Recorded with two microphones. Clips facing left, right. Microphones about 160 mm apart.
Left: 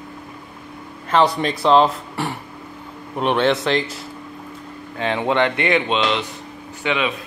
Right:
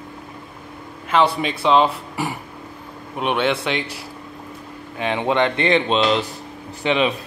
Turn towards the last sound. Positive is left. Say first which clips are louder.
# right 3 dB
turn(degrees=-35)  # may be behind; listen again after turning